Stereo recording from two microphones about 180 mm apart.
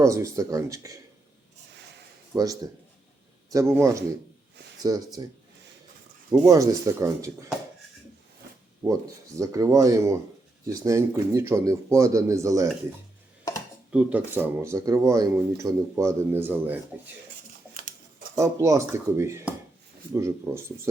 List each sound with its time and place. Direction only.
0.0 s speech: 15° right (ahead or behind)
2.3 s speech: 20° right (ahead or behind)
6.4 s speech: 20° right (ahead or behind)
9.4 s speech: 15° right (ahead or behind)
13.9 s speech: 10° right (ahead or behind)
18.3 s speech: 15° right (ahead or behind)